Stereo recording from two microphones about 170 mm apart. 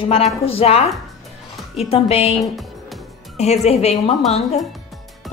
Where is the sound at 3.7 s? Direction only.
40° left (ahead or behind).